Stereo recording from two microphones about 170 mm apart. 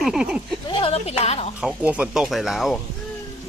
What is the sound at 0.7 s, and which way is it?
Speech, 30° left (ahead or behind).